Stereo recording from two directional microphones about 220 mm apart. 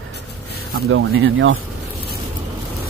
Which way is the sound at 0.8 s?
65° right (ahead or behind).